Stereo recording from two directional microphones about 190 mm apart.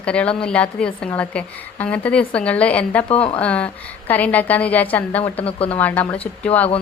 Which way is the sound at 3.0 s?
30° left (ahead or behind).